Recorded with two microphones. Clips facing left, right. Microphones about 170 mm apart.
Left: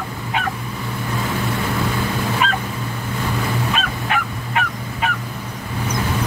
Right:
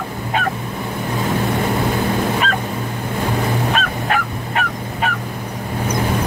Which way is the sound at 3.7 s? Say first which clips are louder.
Right 3 dB; 45° right (ahead or behind).